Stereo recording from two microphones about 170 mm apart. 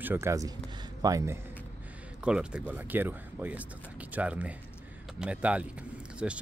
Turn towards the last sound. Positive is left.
turn(degrees=-5)  # may be behind; listen again after turning